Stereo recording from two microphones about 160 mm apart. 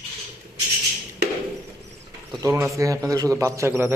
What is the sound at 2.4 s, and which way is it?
A man's voice, 20° right (ahead or behind).